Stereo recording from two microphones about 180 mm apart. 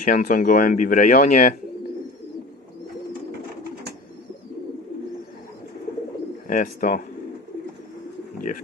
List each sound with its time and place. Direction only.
0.0 s speech: 45° left (ahead or behind)
6.5 s speech: 50° left (ahead or behind)